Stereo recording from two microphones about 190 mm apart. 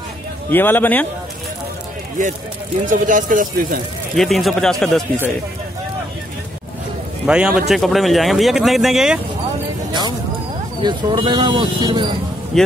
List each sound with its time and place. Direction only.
0.5 s a man's voice: 10° left (ahead or behind)
2.8 s speech: 45° right (ahead or behind)
4.1 s speech: centre (ahead or behind)
7.2 s speech: 5° right (ahead or behind)
10.8 s speech: 25° right (ahead or behind)
12.5 s speech: centre (ahead or behind)